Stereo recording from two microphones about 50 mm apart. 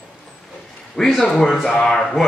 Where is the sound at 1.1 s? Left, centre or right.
Centre.